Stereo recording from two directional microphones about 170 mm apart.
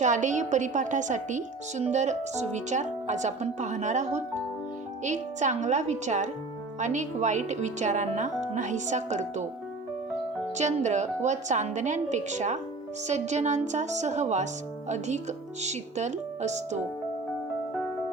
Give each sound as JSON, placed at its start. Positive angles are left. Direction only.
{"t": 0.0, "sound": "a woman's voice", "side_deg": -45}
{"t": 10.6, "sound": "a woman's voice", "side_deg": -45}